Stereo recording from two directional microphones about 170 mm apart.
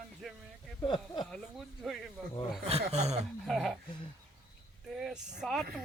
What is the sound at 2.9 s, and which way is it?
Speech, 40° right (ahead or behind).